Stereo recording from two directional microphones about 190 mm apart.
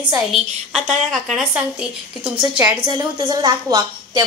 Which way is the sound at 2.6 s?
20° right (ahead or behind).